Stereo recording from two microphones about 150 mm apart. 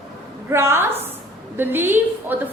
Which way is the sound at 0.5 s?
15° right (ahead or behind).